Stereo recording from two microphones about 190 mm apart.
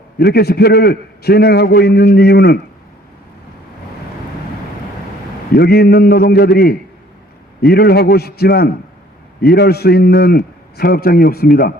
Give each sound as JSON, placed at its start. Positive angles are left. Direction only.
{"t": 0.2, "sound": "a man's voice", "side_deg": 55}
{"t": 5.5, "sound": "a man's voice", "side_deg": 55}